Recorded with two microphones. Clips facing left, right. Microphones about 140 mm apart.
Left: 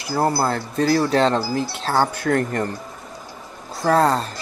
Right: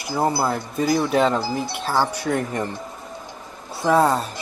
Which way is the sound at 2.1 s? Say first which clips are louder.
Left 3 dB; 55° left (ahead or behind).